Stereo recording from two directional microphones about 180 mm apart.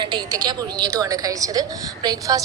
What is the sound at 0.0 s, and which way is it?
A woman's voice, 25° right (ahead or behind).